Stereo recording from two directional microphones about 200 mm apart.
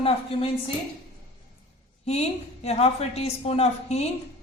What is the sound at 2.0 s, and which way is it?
Speech, 30° left (ahead or behind).